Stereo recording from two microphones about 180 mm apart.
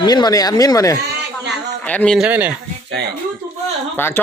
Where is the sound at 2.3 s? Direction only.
10° right (ahead or behind).